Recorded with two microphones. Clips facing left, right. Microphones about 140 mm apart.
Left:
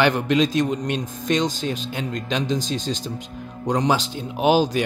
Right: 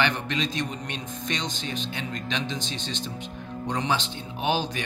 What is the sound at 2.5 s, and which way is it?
Speech, 40° left (ahead or behind).